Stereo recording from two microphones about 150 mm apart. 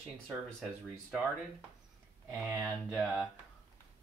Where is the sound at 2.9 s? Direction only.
Centre (ahead or behind).